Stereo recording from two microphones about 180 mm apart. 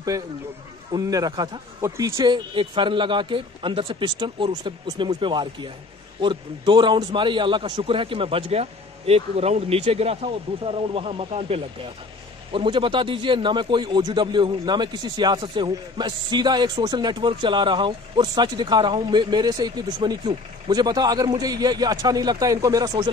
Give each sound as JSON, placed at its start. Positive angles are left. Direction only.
{"t": 0.9, "sound": "speech", "side_deg": -20}
{"t": 2.1, "sound": "a man's voice", "side_deg": -25}